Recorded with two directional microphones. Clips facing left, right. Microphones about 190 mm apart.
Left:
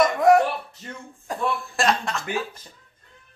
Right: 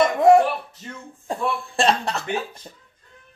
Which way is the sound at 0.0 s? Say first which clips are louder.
Right 2 dB; 30° right (ahead or behind).